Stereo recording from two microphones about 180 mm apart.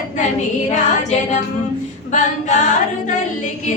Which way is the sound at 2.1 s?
45° left (ahead or behind).